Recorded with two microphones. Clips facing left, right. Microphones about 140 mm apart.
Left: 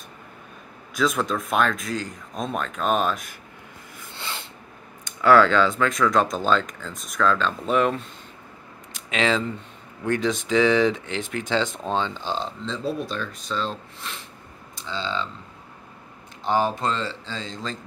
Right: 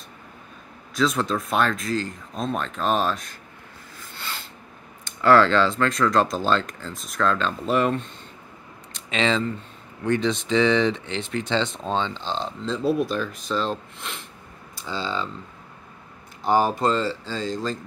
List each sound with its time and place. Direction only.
0.9 s speech: centre (ahead or behind)
4.1 s a sound: 20° left (ahead or behind)
5.2 s speech: centre (ahead or behind)
8.9 s a sound: 5° left (ahead or behind)
10.0 s speech: 5° left (ahead or behind)
12.6 s speech: 5° right (ahead or behind)
16.4 s speech: 5° right (ahead or behind)